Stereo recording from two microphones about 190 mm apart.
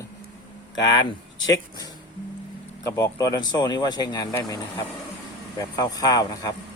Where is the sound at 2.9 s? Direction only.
20° left (ahead or behind).